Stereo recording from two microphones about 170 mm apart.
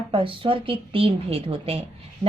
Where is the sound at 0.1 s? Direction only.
30° right (ahead or behind).